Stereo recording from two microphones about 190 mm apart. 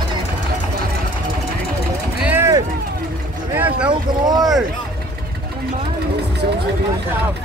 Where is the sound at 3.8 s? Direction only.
20° right (ahead or behind).